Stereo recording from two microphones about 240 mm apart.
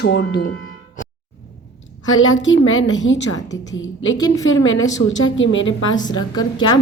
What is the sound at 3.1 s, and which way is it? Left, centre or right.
A woman's voice, left.